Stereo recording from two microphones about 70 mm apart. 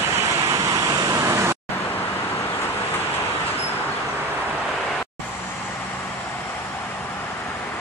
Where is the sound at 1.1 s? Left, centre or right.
Right.